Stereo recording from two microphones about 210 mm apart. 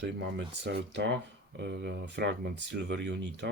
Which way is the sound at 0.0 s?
60° right (ahead or behind).